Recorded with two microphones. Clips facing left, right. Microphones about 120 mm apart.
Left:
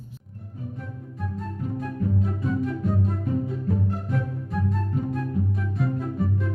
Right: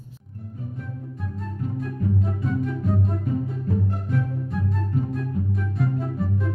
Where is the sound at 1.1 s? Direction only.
Centre (ahead or behind).